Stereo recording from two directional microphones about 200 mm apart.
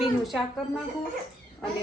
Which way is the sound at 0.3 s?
Centre (ahead or behind).